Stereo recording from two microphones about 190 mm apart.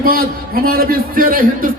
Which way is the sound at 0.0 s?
50° right (ahead or behind).